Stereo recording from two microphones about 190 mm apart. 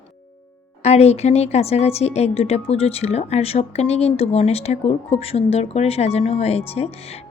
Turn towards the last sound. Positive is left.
turn(degrees=35)  # may be behind; listen again after turning